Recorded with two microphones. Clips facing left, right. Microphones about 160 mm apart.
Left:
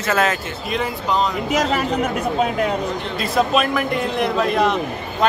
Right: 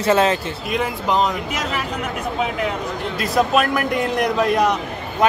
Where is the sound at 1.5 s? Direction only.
40° left (ahead or behind).